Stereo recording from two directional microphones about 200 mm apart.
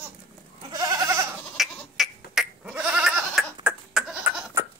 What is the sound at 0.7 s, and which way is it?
Goat, 15° right (ahead or behind).